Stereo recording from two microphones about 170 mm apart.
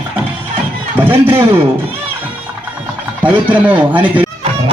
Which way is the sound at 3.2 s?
10° right (ahead or behind).